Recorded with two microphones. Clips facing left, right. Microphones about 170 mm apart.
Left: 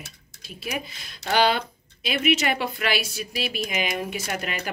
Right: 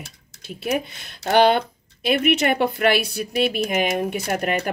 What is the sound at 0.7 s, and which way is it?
Speech, 65° right (ahead or behind).